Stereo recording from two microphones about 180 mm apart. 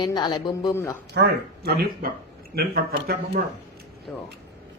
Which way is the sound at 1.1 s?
65° right (ahead or behind).